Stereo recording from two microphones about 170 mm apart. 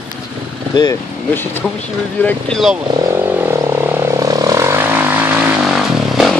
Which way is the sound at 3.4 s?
15° right (ahead or behind).